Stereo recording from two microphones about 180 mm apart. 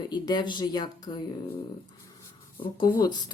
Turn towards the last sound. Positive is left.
turn(degrees=25)  # may be behind; listen again after turning